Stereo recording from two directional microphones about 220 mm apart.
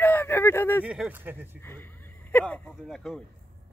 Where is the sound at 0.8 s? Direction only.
5° right (ahead or behind).